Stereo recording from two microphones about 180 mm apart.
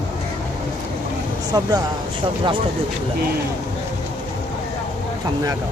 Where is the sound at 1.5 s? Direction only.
20° right (ahead or behind).